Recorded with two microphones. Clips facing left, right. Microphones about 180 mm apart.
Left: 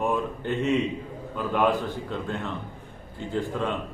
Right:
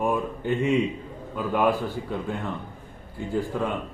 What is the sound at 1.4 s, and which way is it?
A man's voice, 10° right (ahead or behind).